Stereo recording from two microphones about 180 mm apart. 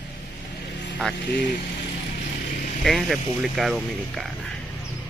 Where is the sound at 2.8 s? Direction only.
Centre (ahead or behind).